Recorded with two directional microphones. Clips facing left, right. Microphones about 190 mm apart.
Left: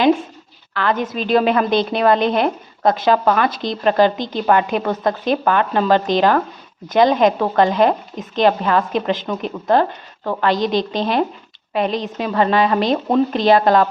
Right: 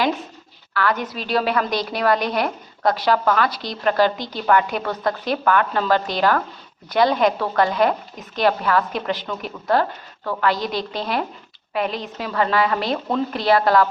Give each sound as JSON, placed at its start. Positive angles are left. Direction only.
{"t": 0.7, "sound": "a woman's voice", "side_deg": 20}